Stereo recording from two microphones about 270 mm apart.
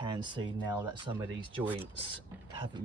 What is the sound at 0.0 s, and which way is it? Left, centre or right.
Speech, centre.